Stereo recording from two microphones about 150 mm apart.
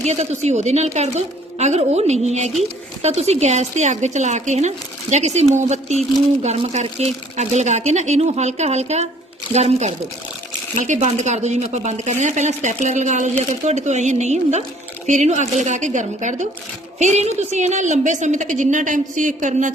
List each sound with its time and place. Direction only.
0.0 s a woman's voice: 45° right (ahead or behind)